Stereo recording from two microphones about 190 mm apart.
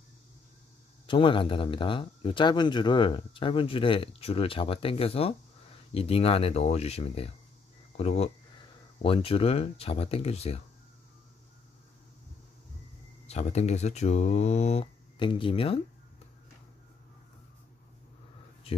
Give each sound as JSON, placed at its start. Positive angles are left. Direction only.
{"t": 1.0, "sound": "speech", "side_deg": 25}
{"t": 13.3, "sound": "speech", "side_deg": 35}